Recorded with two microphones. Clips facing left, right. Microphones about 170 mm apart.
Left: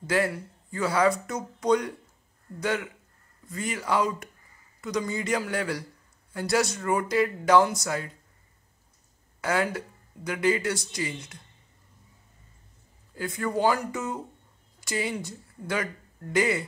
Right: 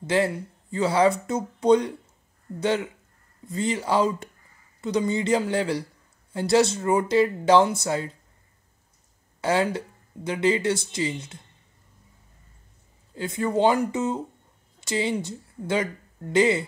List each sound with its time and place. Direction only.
0.0 s speech: 25° right (ahead or behind)
9.4 s speech: 25° right (ahead or behind)
13.1 s speech: 25° right (ahead or behind)